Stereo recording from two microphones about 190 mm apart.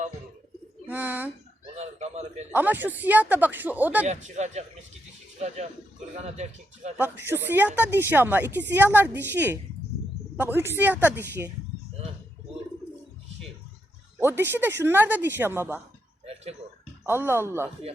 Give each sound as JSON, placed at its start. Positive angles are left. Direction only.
{"t": 0.9, "sound": "speech", "side_deg": -10}
{"t": 1.7, "sound": "a sound", "side_deg": -35}
{"t": 2.5, "sound": "speech", "side_deg": -10}
{"t": 4.0, "sound": "a man's voice", "side_deg": -35}
{"t": 6.1, "sound": "a man's voice", "side_deg": -35}
{"t": 6.9, "sound": "speech", "side_deg": -10}
{"t": 14.2, "sound": "speech", "side_deg": -10}
{"t": 16.2, "sound": "a sound", "side_deg": -35}
{"t": 17.1, "sound": "speech", "side_deg": -10}